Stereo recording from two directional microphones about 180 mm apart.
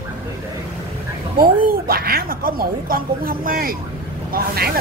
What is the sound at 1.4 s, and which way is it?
A woman's voice, 55° right (ahead or behind).